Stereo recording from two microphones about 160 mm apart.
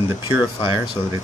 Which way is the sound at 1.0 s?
30° left (ahead or behind).